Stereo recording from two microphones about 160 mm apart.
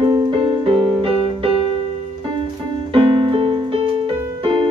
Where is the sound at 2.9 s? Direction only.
30° right (ahead or behind).